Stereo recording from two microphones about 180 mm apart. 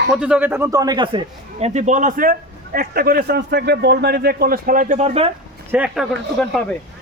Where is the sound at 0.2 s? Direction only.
5° right (ahead or behind); by 5.3 s 35° right (ahead or behind).